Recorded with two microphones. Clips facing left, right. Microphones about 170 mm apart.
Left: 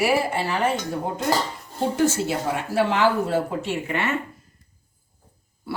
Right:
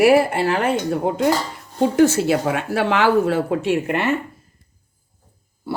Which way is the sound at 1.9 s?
75° right (ahead or behind).